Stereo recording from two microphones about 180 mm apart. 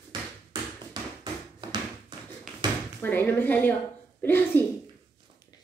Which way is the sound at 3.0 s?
10° left (ahead or behind).